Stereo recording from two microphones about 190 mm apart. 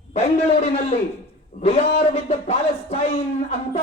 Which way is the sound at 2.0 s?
30° left (ahead or behind).